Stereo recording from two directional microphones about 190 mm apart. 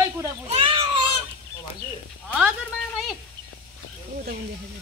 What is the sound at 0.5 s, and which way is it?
Speech, 30° right (ahead or behind).